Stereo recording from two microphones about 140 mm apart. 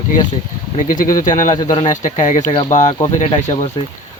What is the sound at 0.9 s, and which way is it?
Speech, 70° left (ahead or behind).